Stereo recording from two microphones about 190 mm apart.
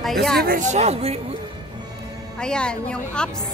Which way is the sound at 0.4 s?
45° right (ahead or behind).